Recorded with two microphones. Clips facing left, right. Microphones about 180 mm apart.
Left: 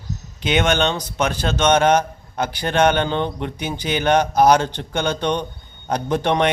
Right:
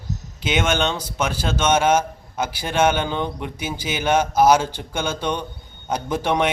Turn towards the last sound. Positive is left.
turn(degrees=-10)  # may be behind; listen again after turning